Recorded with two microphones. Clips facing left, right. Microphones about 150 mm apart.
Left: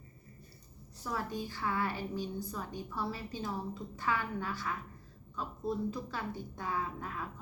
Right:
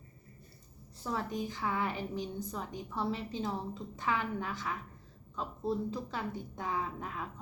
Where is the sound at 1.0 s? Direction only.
20° right (ahead or behind).